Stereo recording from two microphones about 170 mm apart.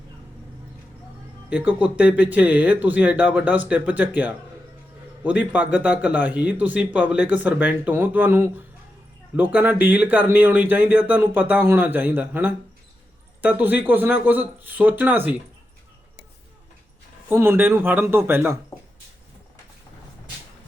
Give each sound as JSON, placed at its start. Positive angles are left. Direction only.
{"t": 1.5, "sound": "a man's voice", "side_deg": -10}
{"t": 17.2, "sound": "a man's voice", "side_deg": -15}